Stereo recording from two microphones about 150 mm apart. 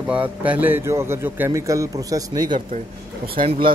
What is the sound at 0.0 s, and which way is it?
A man's voice, 10° right (ahead or behind).